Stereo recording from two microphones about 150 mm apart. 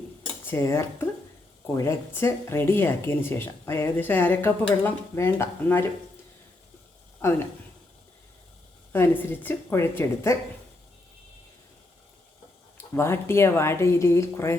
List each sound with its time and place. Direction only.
0.2 s speech: 15° left (ahead or behind)
8.9 s speech: 15° left (ahead or behind)
12.7 s speech: 15° left (ahead or behind)